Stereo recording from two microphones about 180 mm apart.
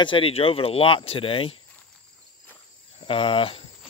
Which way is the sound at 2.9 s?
30° left (ahead or behind).